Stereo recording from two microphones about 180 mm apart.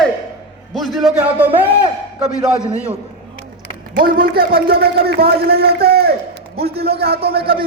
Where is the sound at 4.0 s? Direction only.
55° right (ahead or behind).